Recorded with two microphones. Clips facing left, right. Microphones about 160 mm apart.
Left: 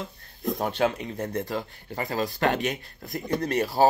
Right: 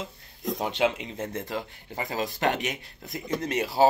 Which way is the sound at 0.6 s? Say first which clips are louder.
Even; 15° right (ahead or behind).